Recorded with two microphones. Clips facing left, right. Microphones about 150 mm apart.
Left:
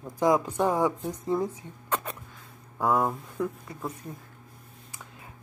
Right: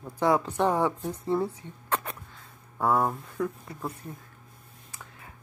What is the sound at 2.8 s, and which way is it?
Speech, 15° left (ahead or behind).